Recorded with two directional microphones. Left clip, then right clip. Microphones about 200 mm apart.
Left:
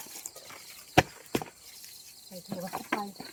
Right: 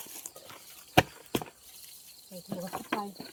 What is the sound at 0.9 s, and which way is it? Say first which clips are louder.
Horse: even; 30° right (ahead or behind).